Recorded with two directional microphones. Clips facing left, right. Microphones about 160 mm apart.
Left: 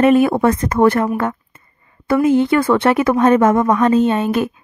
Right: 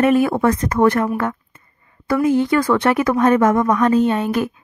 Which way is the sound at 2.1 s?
25° left (ahead or behind).